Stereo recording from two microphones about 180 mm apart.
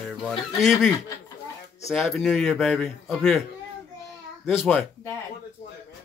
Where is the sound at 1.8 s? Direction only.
Centre (ahead or behind).